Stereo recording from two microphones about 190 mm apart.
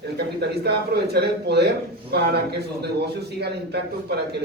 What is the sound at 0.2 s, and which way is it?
A man's voice, 60° right (ahead or behind).